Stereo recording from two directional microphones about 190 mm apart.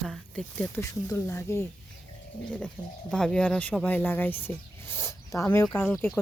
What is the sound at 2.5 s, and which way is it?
Speech, 5° left (ahead or behind).